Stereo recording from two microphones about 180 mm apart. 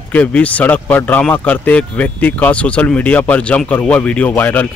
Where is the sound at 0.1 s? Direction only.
10° left (ahead or behind).